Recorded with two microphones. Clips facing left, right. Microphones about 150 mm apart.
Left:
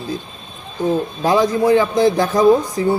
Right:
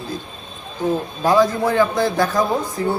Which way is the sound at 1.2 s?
15° left (ahead or behind).